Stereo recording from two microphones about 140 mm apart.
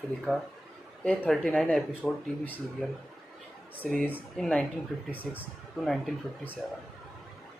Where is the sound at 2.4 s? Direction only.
10° left (ahead or behind).